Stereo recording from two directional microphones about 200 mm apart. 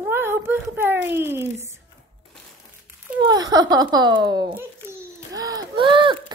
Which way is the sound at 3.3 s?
20° right (ahead or behind).